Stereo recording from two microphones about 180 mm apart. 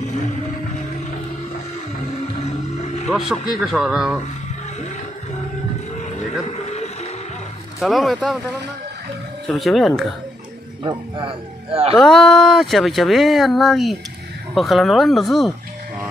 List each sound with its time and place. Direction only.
2.4 s music: 35° left (ahead or behind)
3.1 s speech: centre (ahead or behind)
6.1 s music: 35° left (ahead or behind)
7.8 s speech: centre (ahead or behind)
9.5 s speech: centre (ahead or behind)
10.8 s a man's voice: 25° right (ahead or behind)
12.0 s speech: centre (ahead or behind)